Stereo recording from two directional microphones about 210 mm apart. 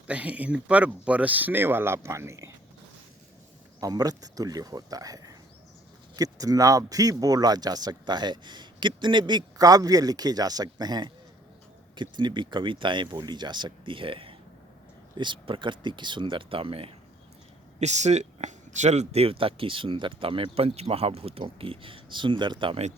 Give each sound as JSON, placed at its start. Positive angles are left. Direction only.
{"t": 0.1, "sound": "speech", "side_deg": -5}
{"t": 3.8, "sound": "speech", "side_deg": -15}